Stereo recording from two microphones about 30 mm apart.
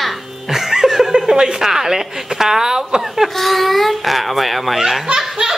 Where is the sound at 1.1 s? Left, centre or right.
Right.